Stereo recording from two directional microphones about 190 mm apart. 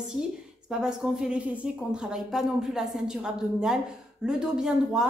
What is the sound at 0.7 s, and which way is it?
A woman's voice, 5° right (ahead or behind).